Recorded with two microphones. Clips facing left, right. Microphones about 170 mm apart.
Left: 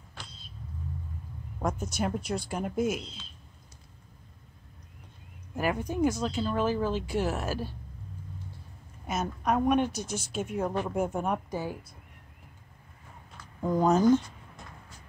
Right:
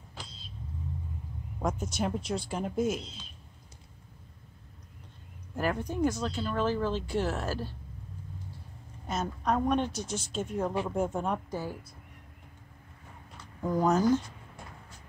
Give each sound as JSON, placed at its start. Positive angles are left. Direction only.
{"t": 1.6, "sound": "a woman's voice", "side_deg": 0}
{"t": 5.6, "sound": "speech", "side_deg": 10}
{"t": 9.0, "sound": "speech", "side_deg": 10}
{"t": 13.6, "sound": "speech", "side_deg": 20}